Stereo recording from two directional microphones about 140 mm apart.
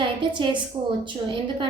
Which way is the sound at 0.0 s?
35° right (ahead or behind).